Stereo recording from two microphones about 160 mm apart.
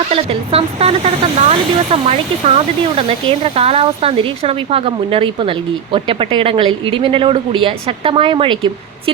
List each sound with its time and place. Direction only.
0.1 s speech: 35° right (ahead or behind)